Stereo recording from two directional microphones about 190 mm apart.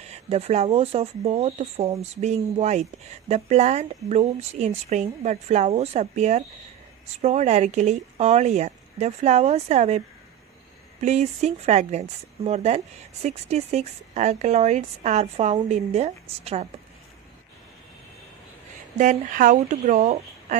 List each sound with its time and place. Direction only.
0.0 s speech: 35° right (ahead or behind)
18.9 s speech: 45° right (ahead or behind)